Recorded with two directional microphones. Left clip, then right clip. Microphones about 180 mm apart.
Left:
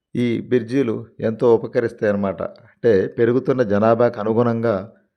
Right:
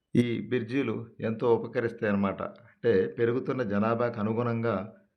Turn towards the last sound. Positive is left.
turn(degrees=50)  # may be behind; listen again after turning